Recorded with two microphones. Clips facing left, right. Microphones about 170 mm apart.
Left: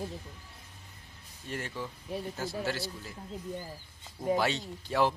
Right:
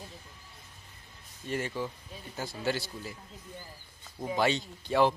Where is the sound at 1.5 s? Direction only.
Centre (ahead or behind).